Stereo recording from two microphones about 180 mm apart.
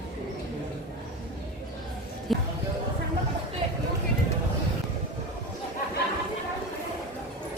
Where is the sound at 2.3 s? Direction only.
Centre (ahead or behind).